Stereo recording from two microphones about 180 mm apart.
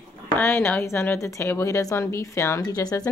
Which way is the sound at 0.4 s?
10° left (ahead or behind).